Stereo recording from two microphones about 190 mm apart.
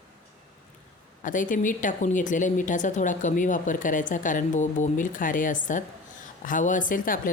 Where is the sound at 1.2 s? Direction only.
45° left (ahead or behind).